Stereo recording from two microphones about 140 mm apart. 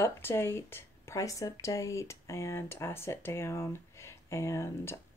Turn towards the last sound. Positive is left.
turn(degrees=20)  # may be behind; listen again after turning